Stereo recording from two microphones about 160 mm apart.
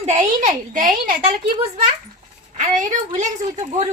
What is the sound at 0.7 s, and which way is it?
Speech, 55° right (ahead or behind).